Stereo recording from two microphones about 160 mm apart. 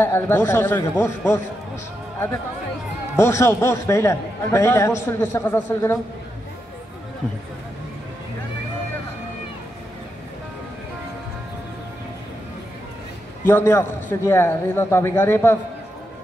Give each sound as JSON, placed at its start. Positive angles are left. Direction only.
{"t": 0.0, "sound": "a man's voice", "side_deg": 15}
{"t": 3.2, "sound": "a man's voice", "side_deg": 15}
{"t": 13.5, "sound": "a man's voice", "side_deg": 15}